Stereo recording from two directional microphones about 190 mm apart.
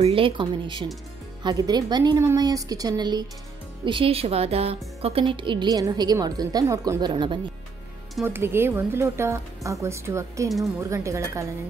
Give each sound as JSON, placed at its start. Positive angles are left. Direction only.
{"t": 0.0, "sound": "a woman's voice", "side_deg": -30}
{"t": 8.3, "sound": "speech", "side_deg": -10}